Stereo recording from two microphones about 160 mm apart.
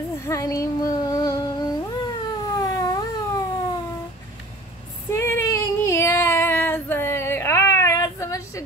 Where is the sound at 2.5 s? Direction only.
20° left (ahead or behind).